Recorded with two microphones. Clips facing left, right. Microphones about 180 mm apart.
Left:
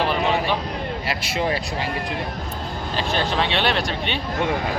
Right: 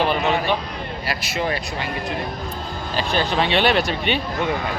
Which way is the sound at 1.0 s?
25° left (ahead or behind).